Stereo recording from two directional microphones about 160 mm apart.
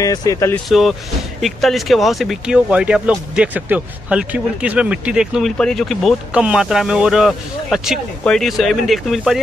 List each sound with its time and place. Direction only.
0.0 s speech: 20° left (ahead or behind)
0.7 s speech: centre (ahead or behind)